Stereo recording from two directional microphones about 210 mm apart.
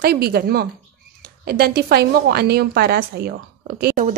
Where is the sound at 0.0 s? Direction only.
50° right (ahead or behind).